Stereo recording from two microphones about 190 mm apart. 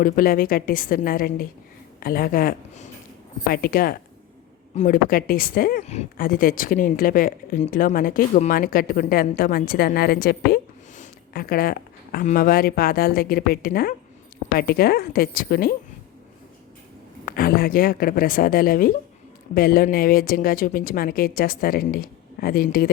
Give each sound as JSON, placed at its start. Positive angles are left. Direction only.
{"t": 0.0, "sound": "speech", "side_deg": 50}
{"t": 5.8, "sound": "speech", "side_deg": 35}
{"t": 6.1, "sound": "speech", "side_deg": 50}
{"t": 17.2, "sound": "speech", "side_deg": 50}